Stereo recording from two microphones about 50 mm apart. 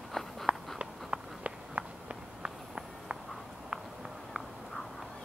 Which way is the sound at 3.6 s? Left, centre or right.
Centre.